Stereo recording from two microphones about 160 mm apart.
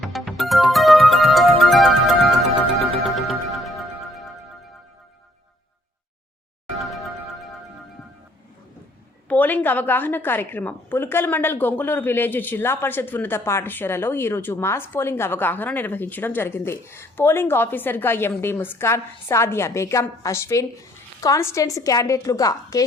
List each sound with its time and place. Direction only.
0.0 s music: centre (ahead or behind)
3.2 s music: centre (ahead or behind)
6.8 s music: centre (ahead or behind)
9.3 s a woman's voice: 10° left (ahead or behind)